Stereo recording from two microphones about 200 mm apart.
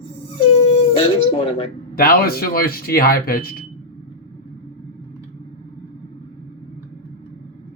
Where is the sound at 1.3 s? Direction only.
25° left (ahead or behind).